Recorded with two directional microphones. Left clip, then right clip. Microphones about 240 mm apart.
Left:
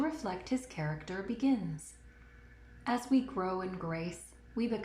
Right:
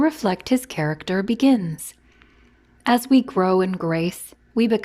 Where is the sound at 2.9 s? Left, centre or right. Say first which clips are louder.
Right 14 dB; right.